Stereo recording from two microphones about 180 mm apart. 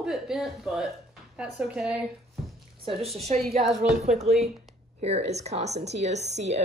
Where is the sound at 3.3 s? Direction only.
40° right (ahead or behind).